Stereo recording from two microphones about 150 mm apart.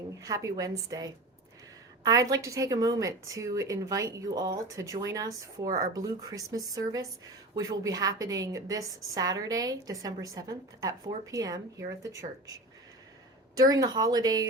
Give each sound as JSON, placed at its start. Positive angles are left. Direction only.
{"t": 0.2, "sound": "a woman's voice", "side_deg": -20}
{"t": 13.6, "sound": "a woman's voice", "side_deg": -25}